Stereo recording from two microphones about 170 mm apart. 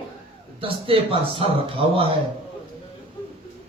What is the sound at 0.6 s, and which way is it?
A man's voice, 35° right (ahead or behind).